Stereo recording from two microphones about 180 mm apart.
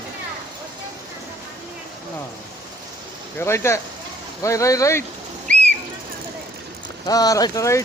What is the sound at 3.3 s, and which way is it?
A man's voice, 15° left (ahead or behind).